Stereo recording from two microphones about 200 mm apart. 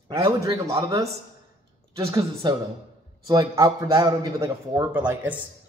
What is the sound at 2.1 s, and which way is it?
A man's voice, 15° right (ahead or behind).